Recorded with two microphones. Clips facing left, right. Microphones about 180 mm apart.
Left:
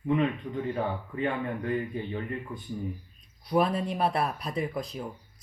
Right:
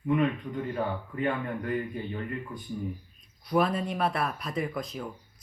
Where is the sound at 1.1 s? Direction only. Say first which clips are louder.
Even; 25° left (ahead or behind).